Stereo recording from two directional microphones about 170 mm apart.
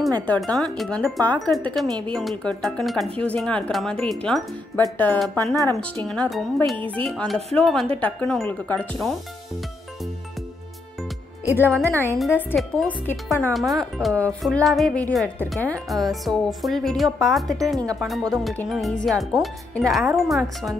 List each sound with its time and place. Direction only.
0.3 s speech: 5° left (ahead or behind)
11.6 s speech: 15° right (ahead or behind)
12.3 s speech: 10° left (ahead or behind)